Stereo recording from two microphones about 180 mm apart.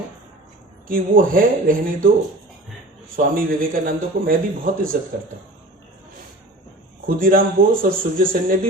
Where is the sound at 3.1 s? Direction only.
50° right (ahead or behind).